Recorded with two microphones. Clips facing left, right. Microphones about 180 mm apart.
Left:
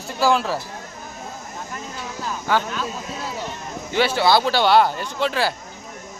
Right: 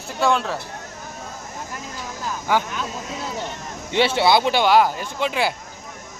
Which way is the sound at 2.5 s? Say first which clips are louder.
Even; 15° right (ahead or behind).